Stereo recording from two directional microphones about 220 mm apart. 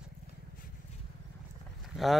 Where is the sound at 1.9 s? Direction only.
Centre (ahead or behind).